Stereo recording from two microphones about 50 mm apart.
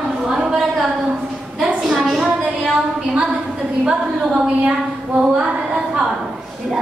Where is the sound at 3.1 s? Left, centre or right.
Centre.